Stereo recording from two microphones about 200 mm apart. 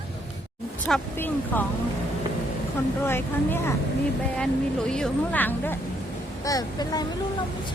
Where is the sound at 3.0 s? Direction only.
10° left (ahead or behind).